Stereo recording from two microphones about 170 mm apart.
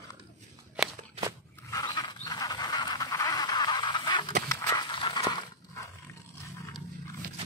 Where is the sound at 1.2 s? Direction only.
35° right (ahead or behind).